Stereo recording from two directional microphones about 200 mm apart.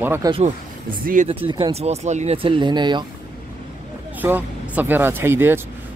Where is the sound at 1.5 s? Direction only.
25° right (ahead or behind).